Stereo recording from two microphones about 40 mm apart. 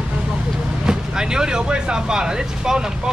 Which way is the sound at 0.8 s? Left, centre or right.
Centre.